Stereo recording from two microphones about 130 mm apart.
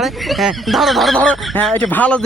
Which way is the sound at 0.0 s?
Centre (ahead or behind).